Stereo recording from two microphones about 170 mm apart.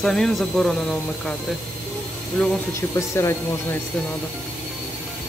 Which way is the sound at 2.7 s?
15° left (ahead or behind).